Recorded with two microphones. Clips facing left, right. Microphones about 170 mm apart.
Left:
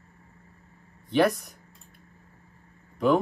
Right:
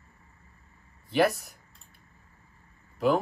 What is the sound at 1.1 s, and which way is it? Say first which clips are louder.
Speech: left 2 dB; 5° right (ahead or behind).